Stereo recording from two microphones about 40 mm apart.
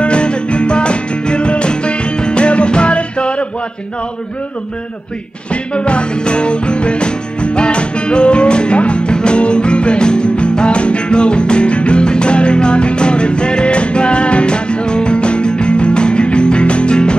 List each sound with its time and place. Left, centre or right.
0.0 s music: left
5.5 s music: left